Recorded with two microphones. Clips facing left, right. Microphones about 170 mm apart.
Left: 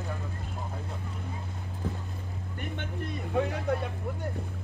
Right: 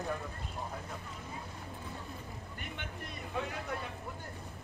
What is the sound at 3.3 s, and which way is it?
Speech, 55° left (ahead or behind).